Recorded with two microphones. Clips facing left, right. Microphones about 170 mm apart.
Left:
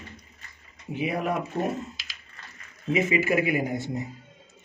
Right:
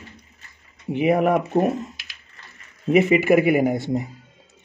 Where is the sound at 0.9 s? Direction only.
65° right (ahead or behind).